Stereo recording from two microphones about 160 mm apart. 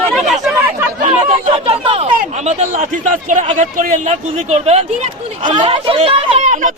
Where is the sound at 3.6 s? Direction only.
50° right (ahead or behind).